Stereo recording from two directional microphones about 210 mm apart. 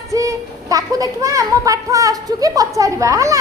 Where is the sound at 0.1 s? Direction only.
15° right (ahead or behind).